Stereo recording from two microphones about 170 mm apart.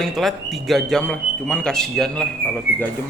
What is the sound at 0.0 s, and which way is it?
Speech, centre (ahead or behind).